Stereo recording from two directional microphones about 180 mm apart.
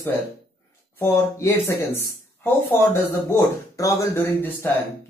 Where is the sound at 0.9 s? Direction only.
15° left (ahead or behind).